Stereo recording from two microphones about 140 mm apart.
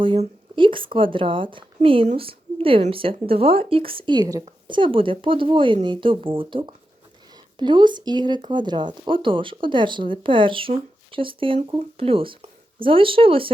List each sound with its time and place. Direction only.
0.0 s speech: 35° right (ahead or behind)